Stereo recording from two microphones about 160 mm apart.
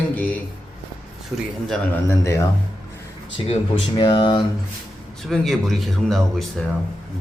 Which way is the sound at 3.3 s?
35° left (ahead or behind).